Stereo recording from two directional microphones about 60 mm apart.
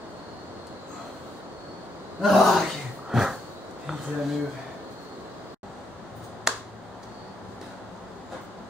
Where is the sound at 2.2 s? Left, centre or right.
Centre.